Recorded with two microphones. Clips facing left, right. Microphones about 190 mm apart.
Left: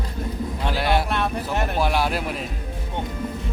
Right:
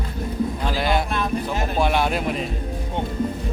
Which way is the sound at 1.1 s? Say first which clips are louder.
Right 1 dB; 65° left (ahead or behind).